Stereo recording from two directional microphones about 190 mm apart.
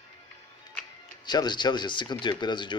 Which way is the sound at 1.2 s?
20° left (ahead or behind).